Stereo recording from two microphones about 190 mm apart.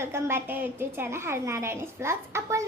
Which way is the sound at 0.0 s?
15° right (ahead or behind).